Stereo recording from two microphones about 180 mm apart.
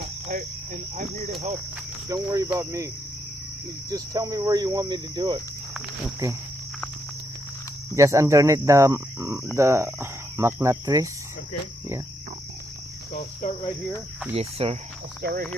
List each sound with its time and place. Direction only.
0.3 s cricket: 45° right (ahead or behind)
2.0 s cricket: 20° right (ahead or behind)
2.5 s speech: 15° right (ahead or behind)
3.8 s cricket: 20° right (ahead or behind)
7.9 s speech: 15° right (ahead or behind)
13.4 s cricket: 45° left (ahead or behind)
14.3 s speech: 35° right (ahead or behind)
15.2 s speech: 65° right (ahead or behind)